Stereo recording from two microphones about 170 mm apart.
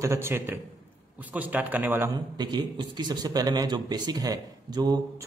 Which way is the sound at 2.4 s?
25° right (ahead or behind).